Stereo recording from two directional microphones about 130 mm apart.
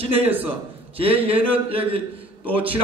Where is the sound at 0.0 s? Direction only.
45° right (ahead or behind).